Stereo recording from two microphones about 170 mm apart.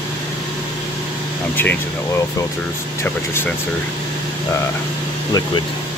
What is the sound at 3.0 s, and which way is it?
Speech, 15° left (ahead or behind).